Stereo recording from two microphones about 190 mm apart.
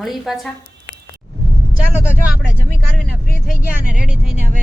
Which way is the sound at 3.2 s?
45° left (ahead or behind).